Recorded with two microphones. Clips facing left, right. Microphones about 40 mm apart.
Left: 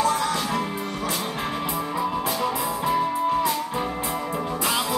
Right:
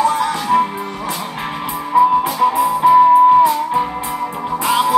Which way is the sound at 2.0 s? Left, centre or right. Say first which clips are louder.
Right 16 dB; right.